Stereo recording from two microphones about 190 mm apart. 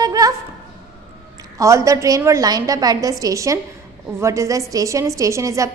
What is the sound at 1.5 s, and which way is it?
A woman's voice, 15° right (ahead or behind).